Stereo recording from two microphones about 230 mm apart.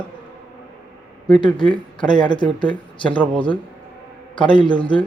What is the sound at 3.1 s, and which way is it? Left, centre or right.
Speech, centre.